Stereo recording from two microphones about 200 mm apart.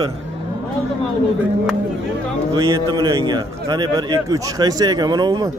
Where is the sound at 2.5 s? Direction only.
20° right (ahead or behind).